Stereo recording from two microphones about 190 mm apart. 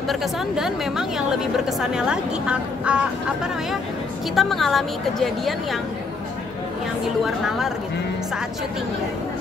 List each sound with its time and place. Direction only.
0.1 s a woman's voice: centre (ahead or behind)
4.4 s a woman's voice: centre (ahead or behind)
7.2 s a woman's voice: centre (ahead or behind)